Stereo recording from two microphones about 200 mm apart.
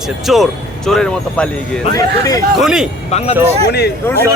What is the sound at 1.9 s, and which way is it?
Speech, 20° left (ahead or behind).